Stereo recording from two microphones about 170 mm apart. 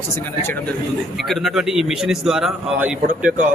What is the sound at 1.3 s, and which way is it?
A man's voice, centre (ahead or behind).